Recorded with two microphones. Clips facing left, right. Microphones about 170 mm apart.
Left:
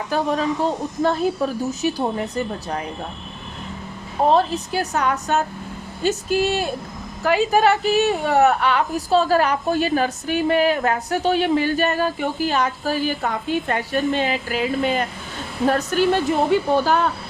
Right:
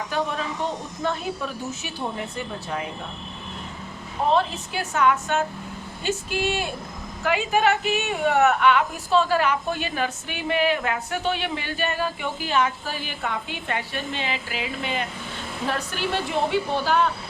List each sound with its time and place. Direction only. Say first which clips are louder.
0.1 s a woman's voice: left 8 dB; 40° left (ahead or behind)
4.3 s a woman's voice: left 4 dB; 40° left (ahead or behind)